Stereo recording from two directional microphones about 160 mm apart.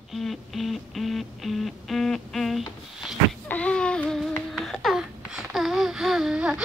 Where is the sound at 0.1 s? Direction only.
Centre (ahead or behind).